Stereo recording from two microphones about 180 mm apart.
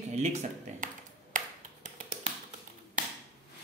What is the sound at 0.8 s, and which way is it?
Ping, 45° right (ahead or behind).